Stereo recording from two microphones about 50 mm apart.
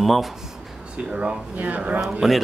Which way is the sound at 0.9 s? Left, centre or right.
Centre.